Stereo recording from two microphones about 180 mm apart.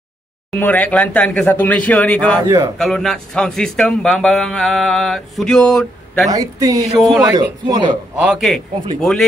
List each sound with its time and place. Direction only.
0.6 s speech: 10° left (ahead or behind)
2.4 s speech: 20° right (ahead or behind)
2.8 s a man's voice: centre (ahead or behind)
6.2 s speech: 20° right (ahead or behind)
7.0 s a man's voice: centre (ahead or behind)
7.2 s speech: 25° right (ahead or behind)
8.2 s a man's voice: centre (ahead or behind)